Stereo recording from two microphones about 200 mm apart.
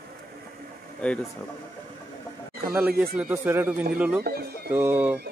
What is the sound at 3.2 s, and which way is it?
Speech, 10° right (ahead or behind).